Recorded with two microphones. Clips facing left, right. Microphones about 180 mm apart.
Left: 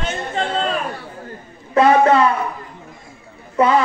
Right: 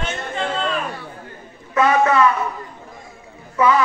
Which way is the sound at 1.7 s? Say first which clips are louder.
Left 3 dB; 30° left (ahead or behind).